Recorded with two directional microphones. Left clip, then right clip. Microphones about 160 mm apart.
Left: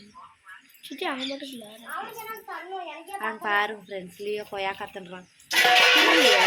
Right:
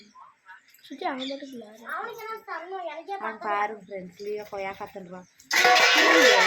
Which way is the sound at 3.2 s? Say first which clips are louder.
Left 3 dB; 40° left (ahead or behind).